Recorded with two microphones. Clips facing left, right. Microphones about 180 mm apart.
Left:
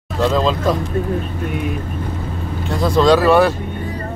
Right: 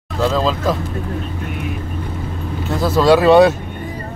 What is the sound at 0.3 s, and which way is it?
Speech, centre (ahead or behind).